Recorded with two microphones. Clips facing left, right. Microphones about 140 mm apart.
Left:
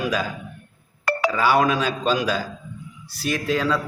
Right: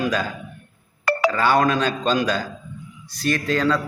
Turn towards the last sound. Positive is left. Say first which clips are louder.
# right 2 dB
turn(degrees=5)  # may be behind; listen again after turning